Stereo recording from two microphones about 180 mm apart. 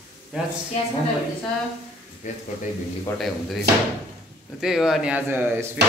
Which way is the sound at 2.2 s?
45° left (ahead or behind).